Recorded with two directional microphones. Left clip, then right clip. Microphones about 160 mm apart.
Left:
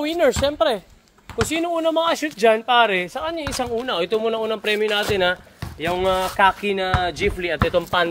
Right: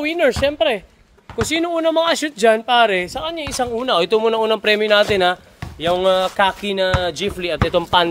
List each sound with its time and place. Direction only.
0.0 s speech: 5° right (ahead or behind)
1.5 s speech: 30° right (ahead or behind)
2.1 s speech: 50° right (ahead or behind)
2.5 s speech: 35° right (ahead or behind)
3.8 s speech: 50° right (ahead or behind)
5.8 s speech: 35° right (ahead or behind)
7.5 s speech: 45° right (ahead or behind)